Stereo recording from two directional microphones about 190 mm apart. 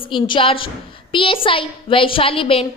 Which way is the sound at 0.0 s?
25° left (ahead or behind).